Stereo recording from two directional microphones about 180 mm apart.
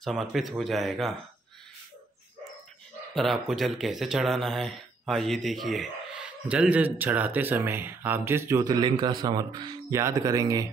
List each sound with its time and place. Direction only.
0.0 s speech: centre (ahead or behind)
3.2 s speech: centre (ahead or behind); by 10.7 s 20° right (ahead or behind)